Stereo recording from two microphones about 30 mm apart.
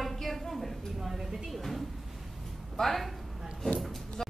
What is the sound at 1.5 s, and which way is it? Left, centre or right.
A woman's voice, centre.